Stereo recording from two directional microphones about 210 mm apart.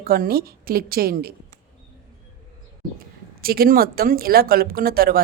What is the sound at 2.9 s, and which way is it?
Speech, 45° right (ahead or behind).